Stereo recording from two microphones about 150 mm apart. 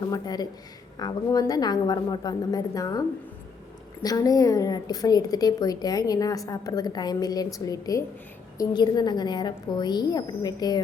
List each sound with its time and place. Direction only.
0.1 s a woman's voice: 25° left (ahead or behind)
4.0 s a woman's voice: 25° left (ahead or behind)